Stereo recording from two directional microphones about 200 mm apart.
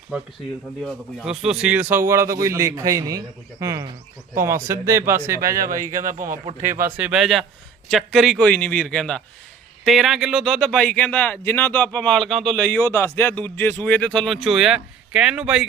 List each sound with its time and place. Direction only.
0.9 s a man's voice: 5° right (ahead or behind)
5.9 s speech: 40° right (ahead or behind)
6.8 s speech: 10° right (ahead or behind)